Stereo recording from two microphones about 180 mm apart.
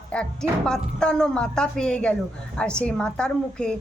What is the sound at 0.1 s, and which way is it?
A woman's voice, 5° left (ahead or behind).